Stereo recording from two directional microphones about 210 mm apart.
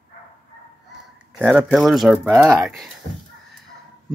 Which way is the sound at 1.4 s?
5° right (ahead or behind).